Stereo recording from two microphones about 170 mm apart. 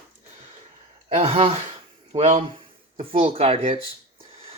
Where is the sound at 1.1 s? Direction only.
35° right (ahead or behind).